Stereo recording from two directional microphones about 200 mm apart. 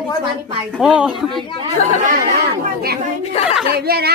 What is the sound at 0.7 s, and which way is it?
Speech, 5° right (ahead or behind).